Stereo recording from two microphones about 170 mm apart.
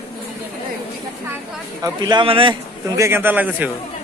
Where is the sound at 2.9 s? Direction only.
15° right (ahead or behind).